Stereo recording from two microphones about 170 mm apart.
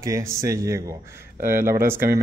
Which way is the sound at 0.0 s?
20° right (ahead or behind).